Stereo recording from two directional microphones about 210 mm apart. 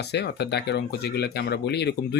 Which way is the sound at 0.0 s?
55° left (ahead or behind).